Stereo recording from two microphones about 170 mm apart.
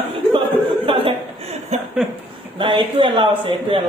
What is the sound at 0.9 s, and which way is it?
Chuckle, 35° right (ahead or behind).